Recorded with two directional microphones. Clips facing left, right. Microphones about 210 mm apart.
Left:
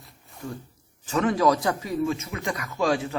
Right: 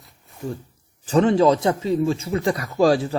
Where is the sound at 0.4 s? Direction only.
20° right (ahead or behind).